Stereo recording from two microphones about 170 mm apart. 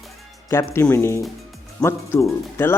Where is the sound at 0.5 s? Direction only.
15° left (ahead or behind).